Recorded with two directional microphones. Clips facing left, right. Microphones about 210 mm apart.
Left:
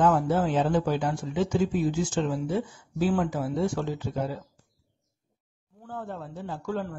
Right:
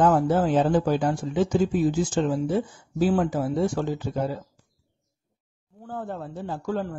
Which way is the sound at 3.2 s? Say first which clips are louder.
Right 3 dB; 40° right (ahead or behind).